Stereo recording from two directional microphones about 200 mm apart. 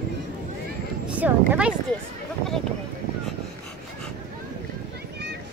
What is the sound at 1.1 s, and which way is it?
Speech, 10° right (ahead or behind).